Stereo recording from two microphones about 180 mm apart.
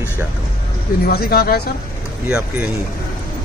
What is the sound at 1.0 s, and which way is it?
Speech, 60° left (ahead or behind).